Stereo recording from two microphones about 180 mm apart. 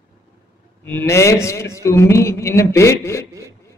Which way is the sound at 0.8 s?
10° left (ahead or behind).